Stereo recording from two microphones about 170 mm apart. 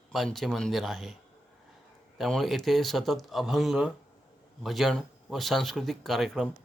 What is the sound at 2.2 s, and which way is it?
Speech, centre (ahead or behind).